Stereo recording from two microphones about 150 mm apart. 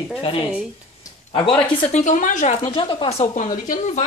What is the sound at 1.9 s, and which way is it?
Speech, 55° left (ahead or behind).